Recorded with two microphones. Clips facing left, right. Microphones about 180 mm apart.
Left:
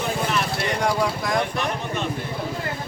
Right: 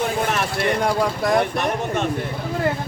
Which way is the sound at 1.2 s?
50° right (ahead or behind).